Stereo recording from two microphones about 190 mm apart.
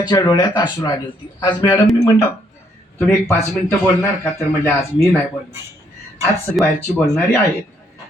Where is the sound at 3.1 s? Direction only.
15° left (ahead or behind).